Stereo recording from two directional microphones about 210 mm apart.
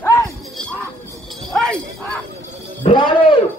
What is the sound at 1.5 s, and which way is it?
Jingle bell, centre (ahead or behind).